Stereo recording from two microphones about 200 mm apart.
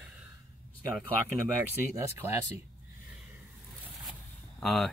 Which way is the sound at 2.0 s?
15° right (ahead or behind).